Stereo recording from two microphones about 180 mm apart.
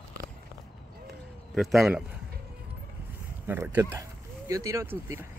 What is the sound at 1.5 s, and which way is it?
Speech, centre (ahead or behind).